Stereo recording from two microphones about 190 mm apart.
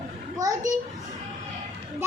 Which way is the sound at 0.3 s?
20° right (ahead or behind).